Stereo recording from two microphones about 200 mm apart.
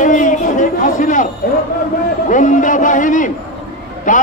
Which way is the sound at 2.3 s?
40° left (ahead or behind).